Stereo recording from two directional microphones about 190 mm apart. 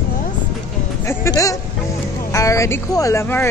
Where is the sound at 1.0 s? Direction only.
15° left (ahead or behind).